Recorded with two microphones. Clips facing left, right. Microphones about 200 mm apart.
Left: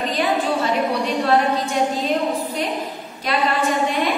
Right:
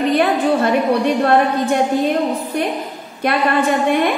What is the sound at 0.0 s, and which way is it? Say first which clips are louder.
A woman's voice: right 6 dB; 60° right (ahead or behind).